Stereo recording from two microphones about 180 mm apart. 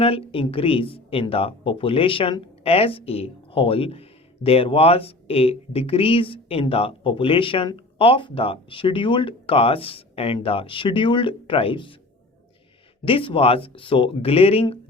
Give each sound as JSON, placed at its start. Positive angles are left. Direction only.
{"t": 0.0, "sound": "speech", "side_deg": 30}
{"t": 13.1, "sound": "speech", "side_deg": 30}